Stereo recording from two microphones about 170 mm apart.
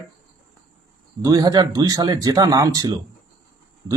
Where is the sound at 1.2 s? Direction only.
20° right (ahead or behind).